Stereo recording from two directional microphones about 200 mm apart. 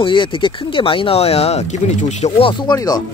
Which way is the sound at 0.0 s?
25° left (ahead or behind).